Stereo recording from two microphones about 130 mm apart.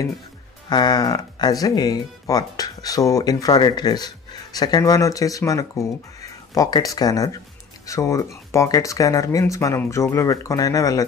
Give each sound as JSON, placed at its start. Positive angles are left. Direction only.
{"t": 0.7, "sound": "speech", "side_deg": 35}